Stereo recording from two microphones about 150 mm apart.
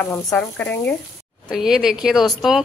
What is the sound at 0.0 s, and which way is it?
A woman's voice, 15° left (ahead or behind).